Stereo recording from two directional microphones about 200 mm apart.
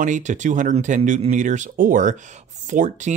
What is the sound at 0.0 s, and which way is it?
Speech, 40° right (ahead or behind).